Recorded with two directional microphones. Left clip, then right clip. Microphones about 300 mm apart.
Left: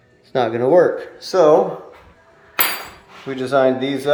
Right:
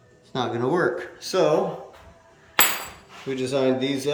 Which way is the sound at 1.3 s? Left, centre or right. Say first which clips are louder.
Left 8 dB; centre.